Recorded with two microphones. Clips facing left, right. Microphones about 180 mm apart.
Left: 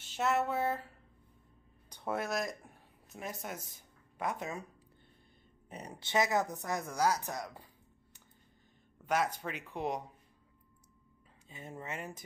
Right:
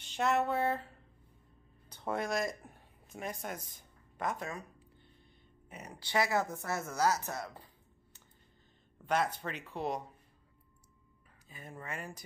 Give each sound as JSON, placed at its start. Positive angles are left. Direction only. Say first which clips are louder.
{"t": 0.0, "sound": "a sound", "louder": "right 1 dB", "side_deg": 5}
{"t": 1.9, "sound": "speech", "louder": "right 1 dB", "side_deg": 10}
{"t": 5.7, "sound": "speech", "louder": "left 1 dB", "side_deg": 30}
{"t": 9.0, "sound": "speech", "louder": "even", "side_deg": 10}
{"t": 11.4, "sound": "speech", "louder": "left 2 dB", "side_deg": 25}